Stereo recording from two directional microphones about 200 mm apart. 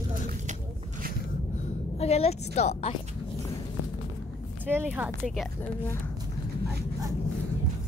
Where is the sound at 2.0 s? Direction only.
30° left (ahead or behind).